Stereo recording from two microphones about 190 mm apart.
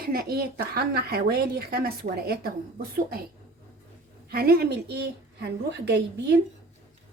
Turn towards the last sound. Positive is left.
turn(degrees=-60)  # may be behind; listen again after turning